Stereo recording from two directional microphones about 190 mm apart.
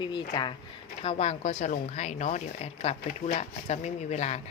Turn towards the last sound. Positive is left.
turn(degrees=35)  # may be behind; listen again after turning